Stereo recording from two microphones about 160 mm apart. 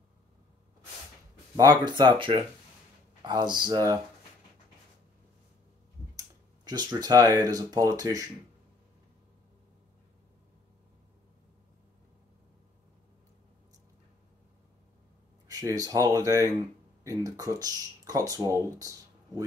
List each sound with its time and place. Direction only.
1.6 s speech: 25° right (ahead or behind)
6.1 s a sound: 25° right (ahead or behind)
7.3 s speech: 20° right (ahead or behind)
15.4 s speech: 20° right (ahead or behind)